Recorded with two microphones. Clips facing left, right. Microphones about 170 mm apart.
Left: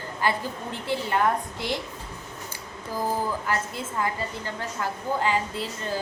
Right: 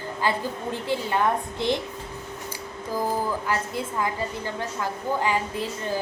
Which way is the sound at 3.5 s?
15° right (ahead or behind).